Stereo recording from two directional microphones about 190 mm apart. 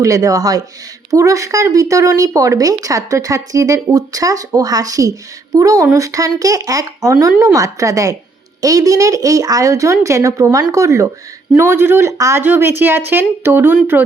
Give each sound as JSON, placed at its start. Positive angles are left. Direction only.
{"t": 0.0, "sound": "speech", "side_deg": -15}